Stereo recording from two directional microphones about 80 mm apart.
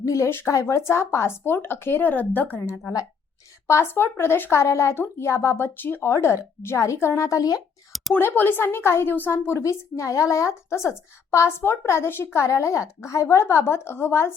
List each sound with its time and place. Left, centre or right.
0.0 s speech: left
0.3 s a woman's voice: left
8.1 s a woman's voice: left